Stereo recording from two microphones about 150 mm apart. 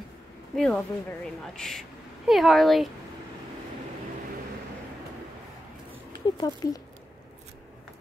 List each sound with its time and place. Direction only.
0.6 s speech: 5° left (ahead or behind)
6.2 s speech: 25° left (ahead or behind)